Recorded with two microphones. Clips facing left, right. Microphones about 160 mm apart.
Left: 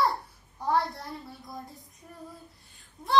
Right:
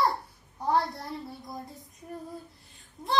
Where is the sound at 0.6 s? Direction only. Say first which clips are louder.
Even; centre (ahead or behind).